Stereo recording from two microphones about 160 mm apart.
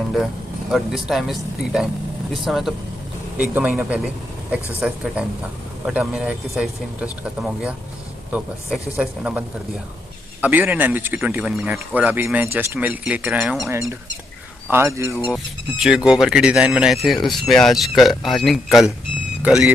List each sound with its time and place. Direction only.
0.1 s speech: centre (ahead or behind)
10.4 s speech: 10° right (ahead or behind)
13.7 s speech: 20° right (ahead or behind)
15.8 s speech: 5° right (ahead or behind)